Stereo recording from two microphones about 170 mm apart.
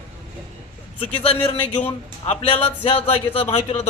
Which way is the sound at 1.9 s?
35° left (ahead or behind).